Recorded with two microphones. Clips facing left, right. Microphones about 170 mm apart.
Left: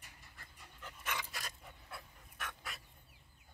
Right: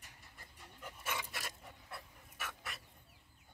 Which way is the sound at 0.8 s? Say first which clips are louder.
Right 1 dB; 10° right (ahead or behind).